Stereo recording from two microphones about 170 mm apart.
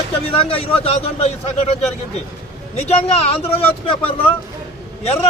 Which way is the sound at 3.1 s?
35° left (ahead or behind).